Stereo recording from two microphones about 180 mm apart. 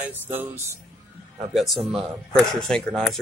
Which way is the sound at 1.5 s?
Centre (ahead or behind).